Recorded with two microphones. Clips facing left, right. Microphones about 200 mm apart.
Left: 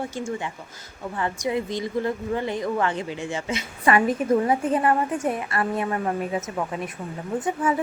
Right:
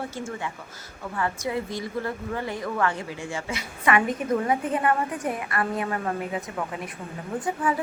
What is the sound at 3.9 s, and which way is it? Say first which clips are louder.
A woman's voice: left 3 dB; 35° left (ahead or behind).